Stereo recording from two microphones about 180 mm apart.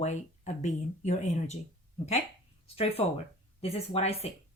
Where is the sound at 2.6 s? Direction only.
35° left (ahead or behind).